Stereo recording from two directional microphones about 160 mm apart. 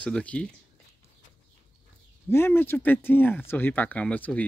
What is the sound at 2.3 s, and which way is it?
Speech, 15° left (ahead or behind).